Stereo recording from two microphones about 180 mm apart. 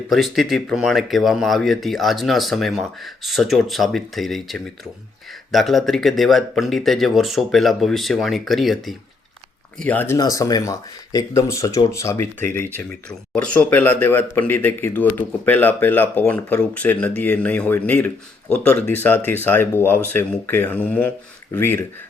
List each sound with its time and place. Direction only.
0.1 s speech: centre (ahead or behind)